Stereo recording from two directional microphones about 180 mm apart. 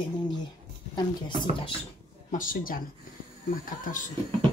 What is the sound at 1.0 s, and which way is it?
Speech, 25° left (ahead or behind).